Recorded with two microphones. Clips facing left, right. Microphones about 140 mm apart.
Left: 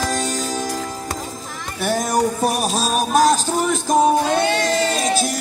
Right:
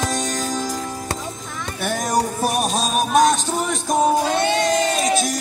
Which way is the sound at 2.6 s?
Centre (ahead or behind).